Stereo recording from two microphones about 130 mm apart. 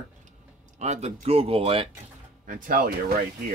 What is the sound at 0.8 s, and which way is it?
Speech, 60° right (ahead or behind).